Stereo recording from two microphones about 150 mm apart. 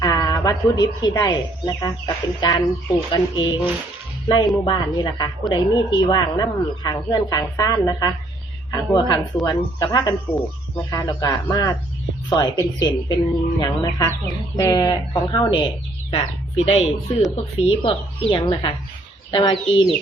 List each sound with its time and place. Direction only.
0.0 s a woman's voice: 25° left (ahead or behind)